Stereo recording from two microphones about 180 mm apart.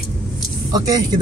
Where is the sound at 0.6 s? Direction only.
20° right (ahead or behind).